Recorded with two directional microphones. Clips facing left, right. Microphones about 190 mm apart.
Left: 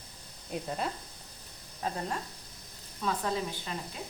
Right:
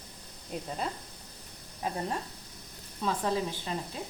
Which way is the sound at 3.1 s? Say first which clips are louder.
Right 2 dB; 30° right (ahead or behind).